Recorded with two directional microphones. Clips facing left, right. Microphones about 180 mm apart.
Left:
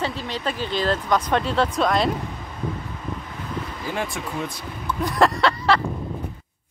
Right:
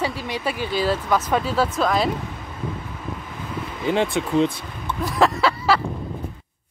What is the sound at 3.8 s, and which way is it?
Speech, 25° right (ahead or behind).